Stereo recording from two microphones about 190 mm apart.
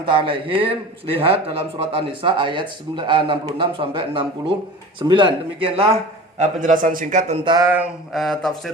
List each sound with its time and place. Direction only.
0.0 s speech: 25° right (ahead or behind)
6.4 s a man's voice: 45° right (ahead or behind)
7.4 s a sound: 15° right (ahead or behind)
8.1 s speech: centre (ahead or behind)